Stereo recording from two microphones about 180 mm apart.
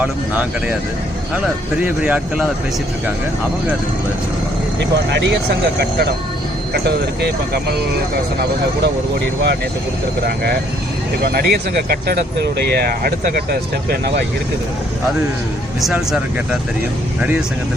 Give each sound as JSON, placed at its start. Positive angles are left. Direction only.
{"t": 0.0, "sound": "speech", "side_deg": -5}
{"t": 1.8, "sound": "speech", "side_deg": -10}
{"t": 4.8, "sound": "speech", "side_deg": -70}
{"t": 15.8, "sound": "speech", "side_deg": -5}